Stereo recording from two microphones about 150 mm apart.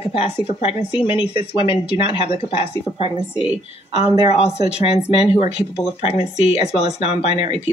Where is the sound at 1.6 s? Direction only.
40° left (ahead or behind).